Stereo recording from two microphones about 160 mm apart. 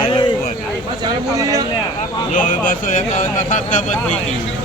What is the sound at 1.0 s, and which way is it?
Speech, 20° right (ahead or behind).